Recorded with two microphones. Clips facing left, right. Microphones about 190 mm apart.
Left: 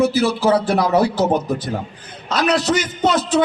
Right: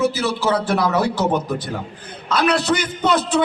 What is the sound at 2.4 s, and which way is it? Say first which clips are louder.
Speech: left 1 dB; 60° right (ahead or behind).